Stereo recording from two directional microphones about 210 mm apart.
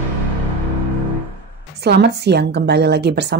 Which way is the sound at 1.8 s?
50° right (ahead or behind).